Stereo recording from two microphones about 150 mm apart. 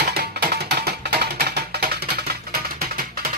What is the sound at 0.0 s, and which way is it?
Music, 90° right.